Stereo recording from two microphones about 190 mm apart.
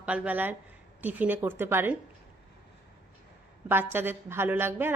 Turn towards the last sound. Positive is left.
turn(degrees=-10)  # may be behind; listen again after turning